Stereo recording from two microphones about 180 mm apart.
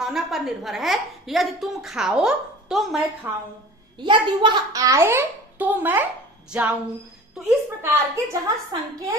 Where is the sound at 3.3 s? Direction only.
10° right (ahead or behind).